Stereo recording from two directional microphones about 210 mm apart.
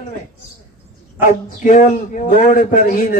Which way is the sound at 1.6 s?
35° left (ahead or behind).